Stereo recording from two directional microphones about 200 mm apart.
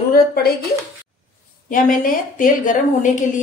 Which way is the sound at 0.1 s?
50° left (ahead or behind).